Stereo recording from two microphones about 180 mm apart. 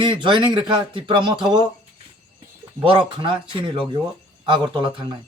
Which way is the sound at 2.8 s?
30° right (ahead or behind).